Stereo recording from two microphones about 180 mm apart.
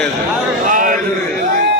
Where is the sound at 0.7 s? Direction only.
50° right (ahead or behind).